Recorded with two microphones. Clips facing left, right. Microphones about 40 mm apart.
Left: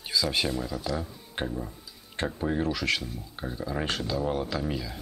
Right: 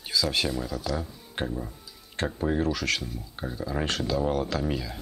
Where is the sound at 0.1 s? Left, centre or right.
Centre.